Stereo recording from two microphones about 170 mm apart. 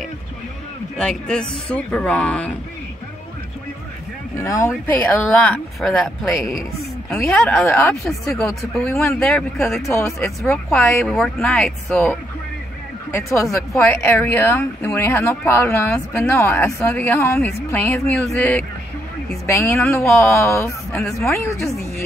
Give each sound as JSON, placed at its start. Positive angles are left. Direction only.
{"t": 0.9, "sound": "speech", "side_deg": 5}
{"t": 4.6, "sound": "speech", "side_deg": 10}
{"t": 13.7, "sound": "speech", "side_deg": 10}
{"t": 19.4, "sound": "speech", "side_deg": 15}